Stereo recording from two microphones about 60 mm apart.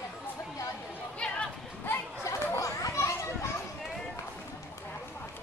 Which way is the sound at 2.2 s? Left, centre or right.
Left.